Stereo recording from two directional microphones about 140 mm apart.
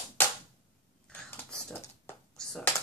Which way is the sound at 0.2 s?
15° left (ahead or behind).